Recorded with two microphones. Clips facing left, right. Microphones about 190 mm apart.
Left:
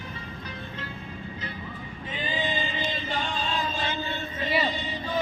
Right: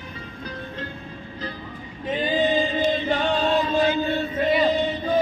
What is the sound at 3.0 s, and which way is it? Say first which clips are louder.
Chant: right 9 dB; 60° right (ahead or behind).